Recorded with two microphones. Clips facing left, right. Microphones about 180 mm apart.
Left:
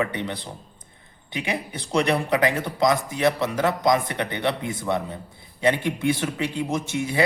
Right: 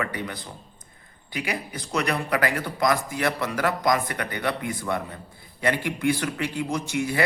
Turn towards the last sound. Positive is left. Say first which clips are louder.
# left 1 dB
turn(degrees=20)  # may be behind; listen again after turning